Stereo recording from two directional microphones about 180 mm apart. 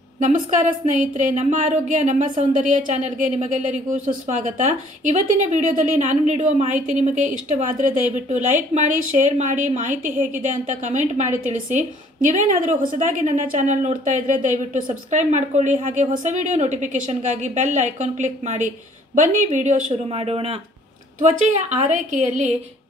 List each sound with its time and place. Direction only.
0.2 s speech: 45° right (ahead or behind)